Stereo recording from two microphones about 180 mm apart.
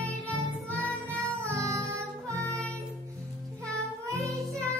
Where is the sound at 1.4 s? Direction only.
15° right (ahead or behind).